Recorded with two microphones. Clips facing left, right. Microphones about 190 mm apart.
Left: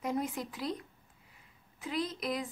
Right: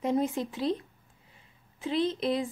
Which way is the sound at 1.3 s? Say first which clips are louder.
Right 2 dB; 25° right (ahead or behind).